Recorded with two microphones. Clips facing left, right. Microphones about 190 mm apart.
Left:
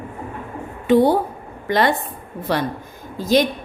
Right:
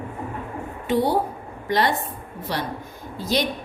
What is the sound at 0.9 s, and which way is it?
A woman's voice, 55° left (ahead or behind).